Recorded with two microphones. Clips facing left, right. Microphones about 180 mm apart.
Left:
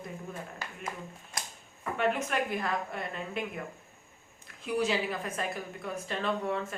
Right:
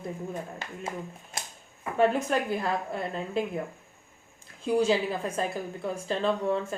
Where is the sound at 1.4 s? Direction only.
25° right (ahead or behind).